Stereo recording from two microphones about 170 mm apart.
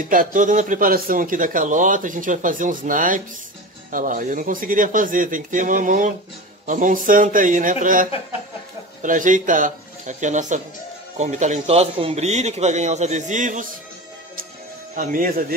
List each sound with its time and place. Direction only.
0.1 s a man's voice: 50° right (ahead or behind)
15.0 s a man's voice: 55° right (ahead or behind)